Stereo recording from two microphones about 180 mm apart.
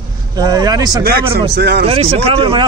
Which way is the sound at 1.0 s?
60° right (ahead or behind).